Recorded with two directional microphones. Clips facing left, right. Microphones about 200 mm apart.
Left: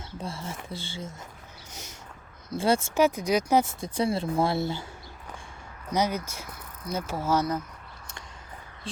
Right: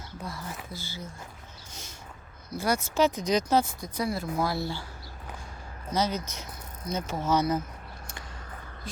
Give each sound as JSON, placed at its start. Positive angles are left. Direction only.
{"t": 0.2, "sound": "speech", "side_deg": 25}
{"t": 2.5, "sound": "speech", "side_deg": 30}
{"t": 2.9, "sound": "speech", "side_deg": 10}
{"t": 3.6, "sound": "speech", "side_deg": 25}
{"t": 5.9, "sound": "speech", "side_deg": 15}